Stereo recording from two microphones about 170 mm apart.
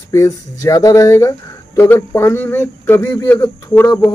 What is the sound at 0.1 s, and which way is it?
Speech, 20° left (ahead or behind).